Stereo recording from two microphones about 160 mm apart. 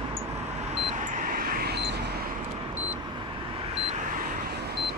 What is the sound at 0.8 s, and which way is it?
Vehicle, 50° right (ahead or behind).